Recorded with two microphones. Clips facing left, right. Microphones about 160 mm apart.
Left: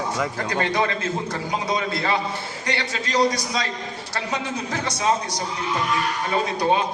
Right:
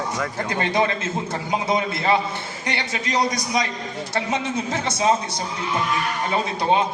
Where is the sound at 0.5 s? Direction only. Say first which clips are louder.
Right 2 dB; 20° right (ahead or behind).